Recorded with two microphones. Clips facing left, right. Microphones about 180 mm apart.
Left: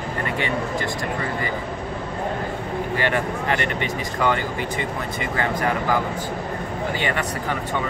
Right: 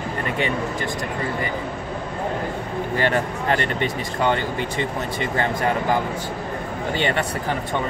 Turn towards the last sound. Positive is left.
turn(degrees=-25)  # may be behind; listen again after turning